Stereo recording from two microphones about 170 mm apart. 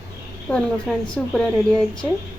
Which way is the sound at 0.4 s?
5° left (ahead or behind).